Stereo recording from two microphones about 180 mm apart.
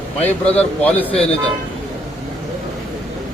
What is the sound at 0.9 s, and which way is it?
Speech, 5° left (ahead or behind).